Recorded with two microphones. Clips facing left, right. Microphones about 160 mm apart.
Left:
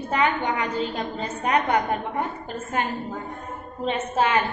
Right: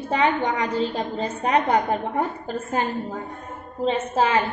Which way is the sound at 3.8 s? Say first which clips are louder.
Right 2 dB; 30° right (ahead or behind).